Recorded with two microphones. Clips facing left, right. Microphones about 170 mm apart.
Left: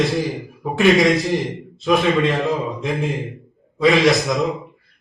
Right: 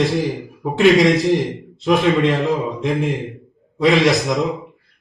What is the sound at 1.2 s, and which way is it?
A man's voice, 20° right (ahead or behind).